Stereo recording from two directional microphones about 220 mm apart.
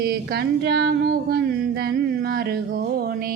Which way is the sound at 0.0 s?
45° right (ahead or behind).